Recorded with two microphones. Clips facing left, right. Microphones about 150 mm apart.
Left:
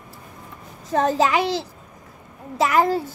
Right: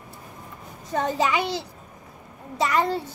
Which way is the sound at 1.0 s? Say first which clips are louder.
Left 4 dB; 90° left.